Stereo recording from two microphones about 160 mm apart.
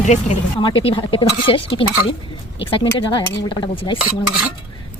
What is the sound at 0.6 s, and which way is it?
Speech, 35° left (ahead or behind).